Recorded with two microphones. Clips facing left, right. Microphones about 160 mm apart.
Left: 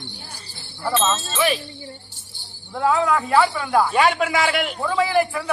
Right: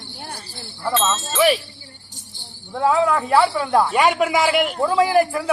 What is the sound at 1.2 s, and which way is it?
Speech, 15° right (ahead or behind).